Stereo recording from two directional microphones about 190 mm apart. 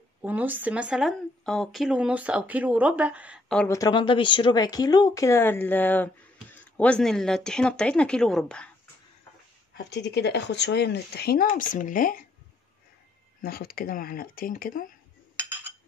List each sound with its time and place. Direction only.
0.2 s speech: 10° right (ahead or behind)
3.6 s speech: 15° left (ahead or behind)
9.8 s speech: 65° left (ahead or behind); by 12.3 s 45° left (ahead or behind)
13.4 s speech: 50° left (ahead or behind)